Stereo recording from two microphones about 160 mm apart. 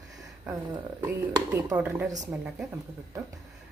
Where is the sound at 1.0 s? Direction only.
15° right (ahead or behind).